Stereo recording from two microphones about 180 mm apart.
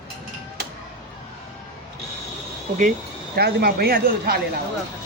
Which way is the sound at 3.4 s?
60° right (ahead or behind).